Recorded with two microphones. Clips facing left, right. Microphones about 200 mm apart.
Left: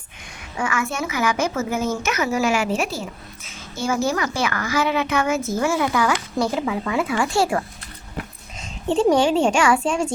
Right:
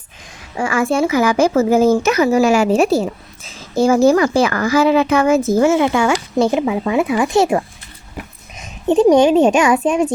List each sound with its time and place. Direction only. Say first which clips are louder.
0.5 s a woman's voice: right 8 dB; 30° right (ahead or behind)